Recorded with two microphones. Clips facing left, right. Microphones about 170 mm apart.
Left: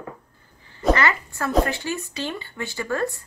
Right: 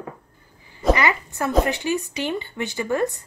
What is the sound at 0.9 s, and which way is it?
A woman's voice, 15° right (ahead or behind).